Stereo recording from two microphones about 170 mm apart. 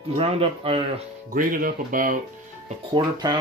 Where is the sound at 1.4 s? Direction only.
55° right (ahead or behind).